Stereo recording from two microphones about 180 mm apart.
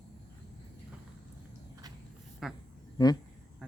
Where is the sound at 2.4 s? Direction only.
Centre (ahead or behind).